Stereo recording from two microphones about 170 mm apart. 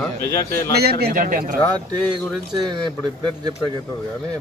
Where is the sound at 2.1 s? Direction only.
25° right (ahead or behind).